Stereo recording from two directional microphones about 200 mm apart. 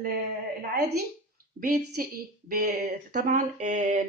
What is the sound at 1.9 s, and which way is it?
Speech, 45° right (ahead or behind).